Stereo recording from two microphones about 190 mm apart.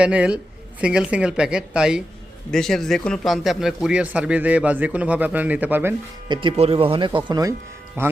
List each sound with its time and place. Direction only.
0.0 s speech: 5° right (ahead or behind)
6.2 s speech: 25° right (ahead or behind)